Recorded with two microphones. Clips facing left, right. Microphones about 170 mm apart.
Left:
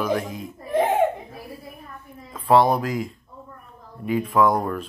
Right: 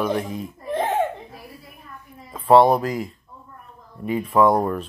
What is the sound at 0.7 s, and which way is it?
Laughter, 10° left (ahead or behind).